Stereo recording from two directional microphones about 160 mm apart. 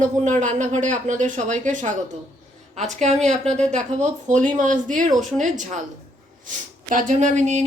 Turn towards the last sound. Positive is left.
turn(degrees=-50)  # may be behind; listen again after turning